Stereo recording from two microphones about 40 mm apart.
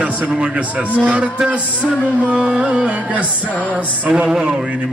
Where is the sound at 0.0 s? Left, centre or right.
Right.